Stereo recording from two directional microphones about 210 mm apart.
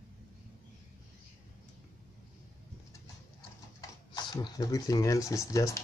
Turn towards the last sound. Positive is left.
turn(degrees=15)  # may be behind; listen again after turning